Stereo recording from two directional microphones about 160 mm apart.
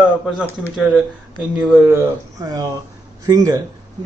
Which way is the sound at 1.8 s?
20° right (ahead or behind).